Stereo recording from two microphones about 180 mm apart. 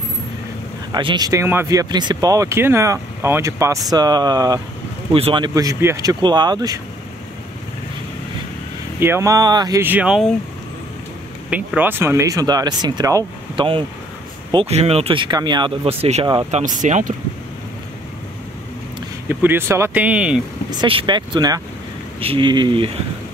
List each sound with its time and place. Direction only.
0.9 s speech: 25° right (ahead or behind)
9.0 s speech: 15° right (ahead or behind)
11.5 s speech: 10° right (ahead or behind)
14.5 s speech: 35° right (ahead or behind)
19.2 s speech: 10° right (ahead or behind)
20.8 s speech: 30° right (ahead or behind)